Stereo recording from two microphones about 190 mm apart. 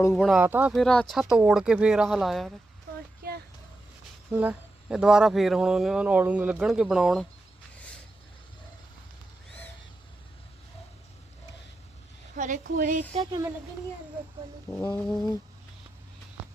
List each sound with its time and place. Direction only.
0.1 s speech: centre (ahead or behind)
0.7 s speech: 5° left (ahead or behind)
3.2 s a sound: 50° right (ahead or behind)
4.3 s speech: 10° right (ahead or behind)
12.4 s a woman's voice: 45° right (ahead or behind)
13.1 s speech: 20° right (ahead or behind)
14.7 s speech: 10° left (ahead or behind)